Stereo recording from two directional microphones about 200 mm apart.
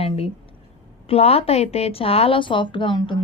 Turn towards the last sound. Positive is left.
turn(degrees=25)  # may be behind; listen again after turning